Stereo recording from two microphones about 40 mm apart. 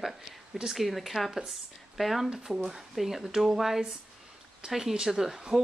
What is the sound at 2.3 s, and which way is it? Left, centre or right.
Speech, centre.